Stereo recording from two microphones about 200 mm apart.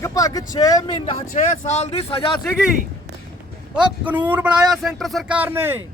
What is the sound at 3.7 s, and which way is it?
Speech, 5° right (ahead or behind).